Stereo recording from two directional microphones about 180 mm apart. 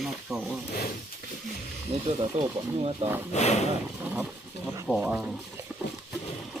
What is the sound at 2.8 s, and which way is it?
Speech, 30° right (ahead or behind).